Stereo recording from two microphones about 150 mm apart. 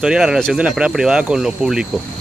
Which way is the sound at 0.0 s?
5° right (ahead or behind).